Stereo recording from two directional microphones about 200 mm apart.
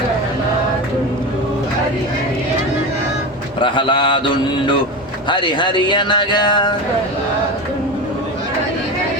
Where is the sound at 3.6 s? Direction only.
25° left (ahead or behind).